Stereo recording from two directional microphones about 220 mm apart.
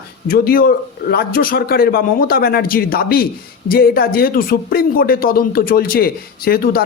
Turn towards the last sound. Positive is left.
turn(degrees=40)  # may be behind; listen again after turning